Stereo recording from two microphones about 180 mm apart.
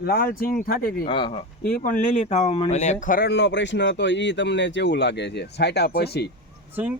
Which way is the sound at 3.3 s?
75° left (ahead or behind).